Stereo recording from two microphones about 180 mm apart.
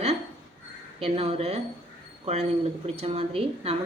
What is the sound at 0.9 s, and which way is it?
Speech, 35° right (ahead or behind).